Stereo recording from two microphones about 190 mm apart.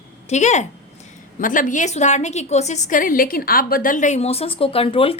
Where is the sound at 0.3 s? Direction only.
40° left (ahead or behind).